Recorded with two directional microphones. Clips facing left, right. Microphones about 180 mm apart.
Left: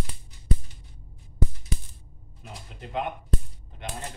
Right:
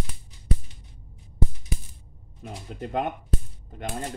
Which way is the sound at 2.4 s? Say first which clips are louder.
Right 7 dB; 45° right (ahead or behind).